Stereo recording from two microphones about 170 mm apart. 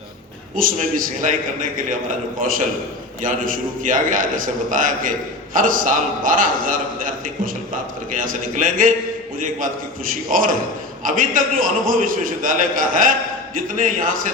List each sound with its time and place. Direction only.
0.5 s a man's voice: 55° right (ahead or behind)
10.3 s a man's voice: 50° right (ahead or behind)